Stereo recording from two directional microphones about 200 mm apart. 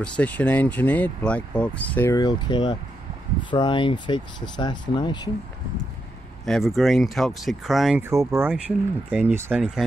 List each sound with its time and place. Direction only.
0.0 s speech: 5° left (ahead or behind); by 5.3 s 20° left (ahead or behind)
6.4 s speech: centre (ahead or behind)
8.0 s speech: 15° right (ahead or behind)